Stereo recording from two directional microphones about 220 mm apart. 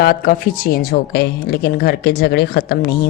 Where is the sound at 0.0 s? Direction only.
45° left (ahead or behind).